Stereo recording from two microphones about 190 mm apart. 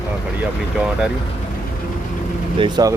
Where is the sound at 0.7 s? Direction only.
5° right (ahead or behind).